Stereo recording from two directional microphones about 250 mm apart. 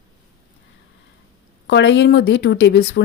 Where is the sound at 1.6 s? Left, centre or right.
Left.